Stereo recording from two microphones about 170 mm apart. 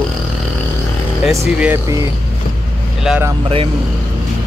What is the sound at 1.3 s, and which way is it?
Speech, 10° right (ahead or behind).